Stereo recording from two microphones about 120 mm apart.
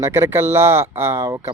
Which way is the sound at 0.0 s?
20° right (ahead or behind).